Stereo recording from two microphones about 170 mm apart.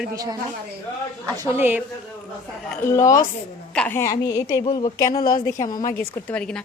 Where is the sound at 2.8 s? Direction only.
15° left (ahead or behind).